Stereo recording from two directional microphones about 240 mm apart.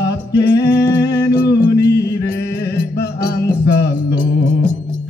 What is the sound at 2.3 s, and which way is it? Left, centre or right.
Music, left.